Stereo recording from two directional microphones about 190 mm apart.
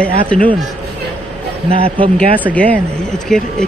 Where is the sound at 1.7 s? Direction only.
30° right (ahead or behind).